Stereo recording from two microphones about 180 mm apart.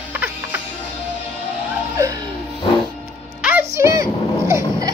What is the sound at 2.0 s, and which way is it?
Music, 20° right (ahead or behind).